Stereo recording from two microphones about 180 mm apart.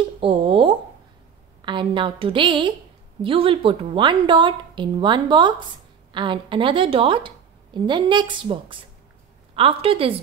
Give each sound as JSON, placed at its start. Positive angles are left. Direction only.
{"t": 0.2, "sound": "a woman's voice", "side_deg": -30}